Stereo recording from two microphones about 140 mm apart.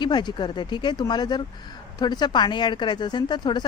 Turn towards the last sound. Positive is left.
turn(degrees=30)  # may be behind; listen again after turning